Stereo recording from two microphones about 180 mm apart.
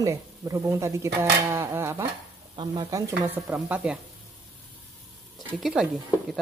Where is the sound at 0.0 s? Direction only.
15° right (ahead or behind).